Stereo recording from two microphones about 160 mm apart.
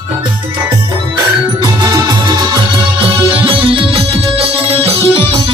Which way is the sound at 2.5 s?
35° right (ahead or behind).